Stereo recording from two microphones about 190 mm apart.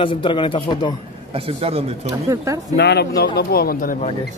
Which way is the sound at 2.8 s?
60° left (ahead or behind).